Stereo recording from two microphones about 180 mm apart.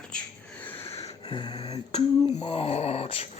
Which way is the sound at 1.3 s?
25° left (ahead or behind).